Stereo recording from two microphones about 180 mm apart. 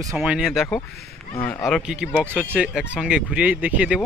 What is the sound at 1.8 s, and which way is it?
Speech, 5° right (ahead or behind).